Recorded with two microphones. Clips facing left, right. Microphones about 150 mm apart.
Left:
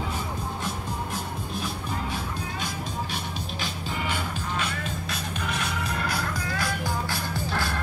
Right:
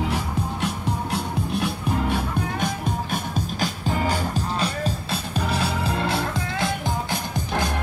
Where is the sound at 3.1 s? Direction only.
45° right (ahead or behind).